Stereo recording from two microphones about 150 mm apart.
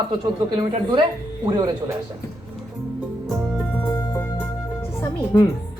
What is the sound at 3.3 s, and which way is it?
Music, centre (ahead or behind).